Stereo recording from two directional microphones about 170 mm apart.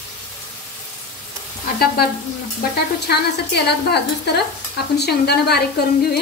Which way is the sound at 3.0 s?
75° left (ahead or behind).